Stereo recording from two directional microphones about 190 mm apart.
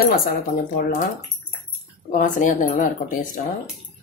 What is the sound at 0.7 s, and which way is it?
Speech, 40° left (ahead or behind).